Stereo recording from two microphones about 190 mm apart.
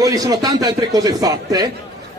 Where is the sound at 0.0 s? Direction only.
20° right (ahead or behind).